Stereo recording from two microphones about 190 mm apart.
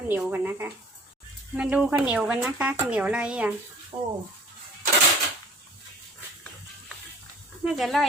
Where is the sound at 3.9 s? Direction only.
35° right (ahead or behind).